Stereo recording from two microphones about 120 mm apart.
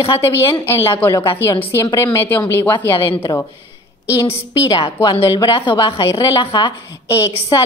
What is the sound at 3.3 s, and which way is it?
Speech, 25° left (ahead or behind).